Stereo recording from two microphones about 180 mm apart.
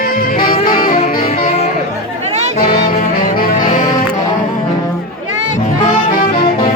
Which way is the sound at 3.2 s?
50° left (ahead or behind).